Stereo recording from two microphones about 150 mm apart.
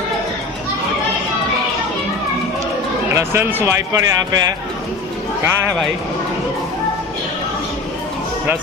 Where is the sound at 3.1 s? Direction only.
15° right (ahead or behind).